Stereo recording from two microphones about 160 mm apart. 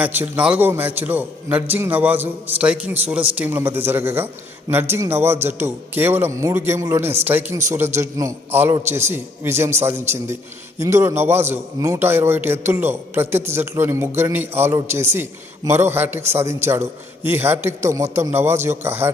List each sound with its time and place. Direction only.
0.0 s a man's voice: 10° right (ahead or behind)